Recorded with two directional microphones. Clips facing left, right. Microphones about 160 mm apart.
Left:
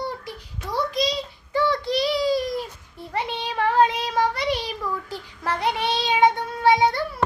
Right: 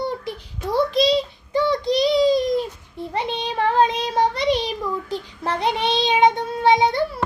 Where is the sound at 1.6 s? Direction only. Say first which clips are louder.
Right 3 dB; 15° right (ahead or behind).